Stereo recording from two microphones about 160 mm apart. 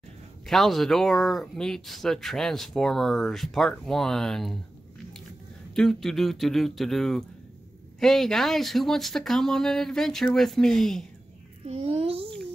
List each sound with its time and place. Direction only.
0.5 s speech: centre (ahead or behind)
5.8 s speech: centre (ahead or behind)
11.6 s a child's voice: 40° right (ahead or behind)